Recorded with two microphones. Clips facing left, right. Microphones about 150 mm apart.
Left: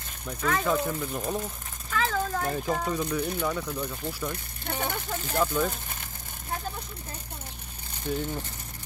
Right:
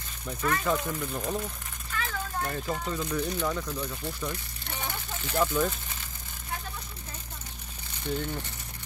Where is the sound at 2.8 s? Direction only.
10° left (ahead or behind).